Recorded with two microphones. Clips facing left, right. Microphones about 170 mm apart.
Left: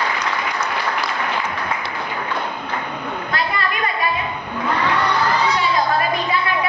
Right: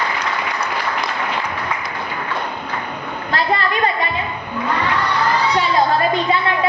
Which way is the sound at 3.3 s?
30° right (ahead or behind).